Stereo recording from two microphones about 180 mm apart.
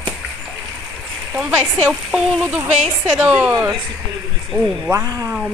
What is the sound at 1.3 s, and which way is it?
A child's voice, 15° right (ahead or behind).